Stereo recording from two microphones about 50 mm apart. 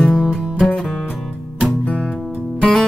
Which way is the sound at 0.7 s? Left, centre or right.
Left.